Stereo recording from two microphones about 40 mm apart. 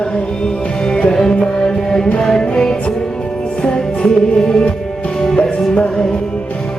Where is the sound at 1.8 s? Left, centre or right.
Centre.